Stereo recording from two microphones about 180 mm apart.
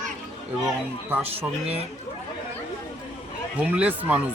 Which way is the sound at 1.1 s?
10° right (ahead or behind).